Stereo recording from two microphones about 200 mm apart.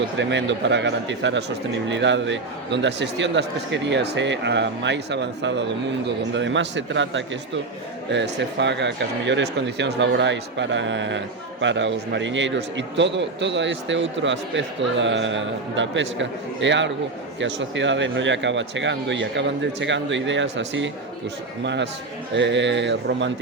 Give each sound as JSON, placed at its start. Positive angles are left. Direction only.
{"t": 0.2, "sound": "a man's voice", "side_deg": -65}